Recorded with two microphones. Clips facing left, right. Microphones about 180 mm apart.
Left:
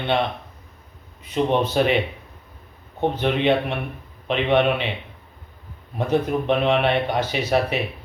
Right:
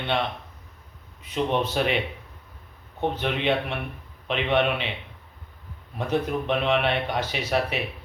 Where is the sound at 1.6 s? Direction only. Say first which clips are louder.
Left 5 dB; centre (ahead or behind).